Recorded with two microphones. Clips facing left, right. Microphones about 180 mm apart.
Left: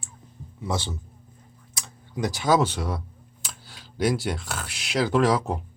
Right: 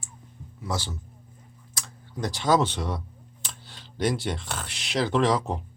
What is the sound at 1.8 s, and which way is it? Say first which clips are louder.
Speech: left 3 dB; 10° left (ahead or behind).